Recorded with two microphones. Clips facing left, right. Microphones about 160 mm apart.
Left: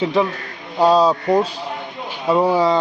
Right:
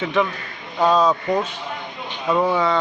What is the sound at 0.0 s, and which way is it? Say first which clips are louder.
Speech: left 3 dB; 35° left (ahead or behind).